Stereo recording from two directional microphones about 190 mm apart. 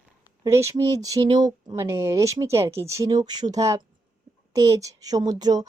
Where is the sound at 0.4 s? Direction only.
15° right (ahead or behind).